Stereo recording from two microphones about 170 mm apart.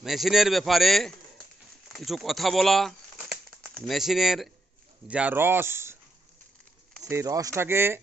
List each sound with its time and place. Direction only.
0.0 s speech: centre (ahead or behind)
7.1 s speech: 20° right (ahead or behind)